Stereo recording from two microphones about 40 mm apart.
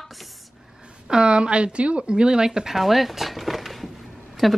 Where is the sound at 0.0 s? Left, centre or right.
Centre.